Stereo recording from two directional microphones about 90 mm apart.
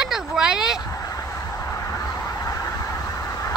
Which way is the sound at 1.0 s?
40° left (ahead or behind).